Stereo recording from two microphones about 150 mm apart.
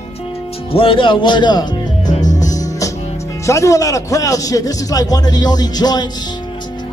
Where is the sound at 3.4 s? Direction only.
20° left (ahead or behind).